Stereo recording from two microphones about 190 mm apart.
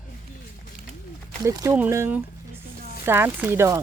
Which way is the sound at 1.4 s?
15° right (ahead or behind).